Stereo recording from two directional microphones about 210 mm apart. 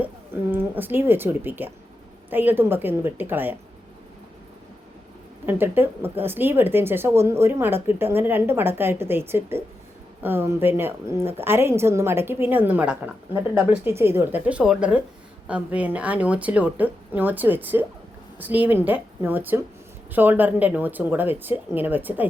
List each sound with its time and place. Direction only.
0.5 s a woman's voice: 10° right (ahead or behind)
5.5 s a woman's voice: 10° right (ahead or behind)